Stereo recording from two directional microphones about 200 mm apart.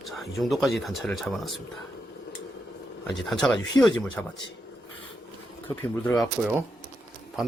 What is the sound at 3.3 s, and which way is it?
Speech, centre (ahead or behind).